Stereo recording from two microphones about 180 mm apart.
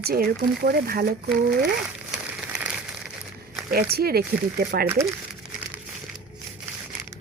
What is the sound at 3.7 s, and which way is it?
Speech, 60° right (ahead or behind).